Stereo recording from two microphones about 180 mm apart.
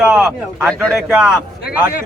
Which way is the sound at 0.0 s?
5° right (ahead or behind).